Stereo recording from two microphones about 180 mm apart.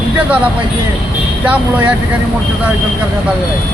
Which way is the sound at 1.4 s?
10° right (ahead or behind).